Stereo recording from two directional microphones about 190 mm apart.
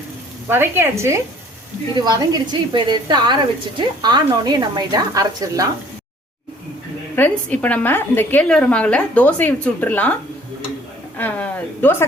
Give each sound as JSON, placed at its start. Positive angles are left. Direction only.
{"t": 0.4, "sound": "a woman's voice", "side_deg": -10}
{"t": 7.2, "sound": "a woman's voice", "side_deg": 10}
{"t": 11.2, "sound": "a woman's voice", "side_deg": 10}